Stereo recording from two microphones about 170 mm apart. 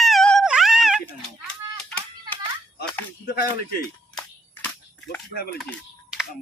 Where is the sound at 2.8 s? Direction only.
65° left (ahead or behind).